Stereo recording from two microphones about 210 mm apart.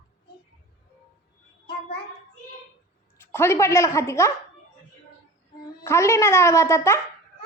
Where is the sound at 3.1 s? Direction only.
10° left (ahead or behind).